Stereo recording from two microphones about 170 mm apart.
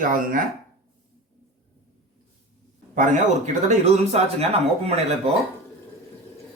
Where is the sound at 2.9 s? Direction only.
45° right (ahead or behind).